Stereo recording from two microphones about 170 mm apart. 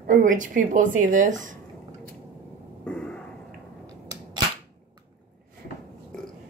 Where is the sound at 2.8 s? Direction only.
5° left (ahead or behind).